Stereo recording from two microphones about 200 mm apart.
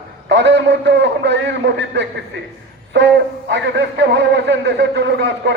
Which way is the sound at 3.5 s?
60° right (ahead or behind).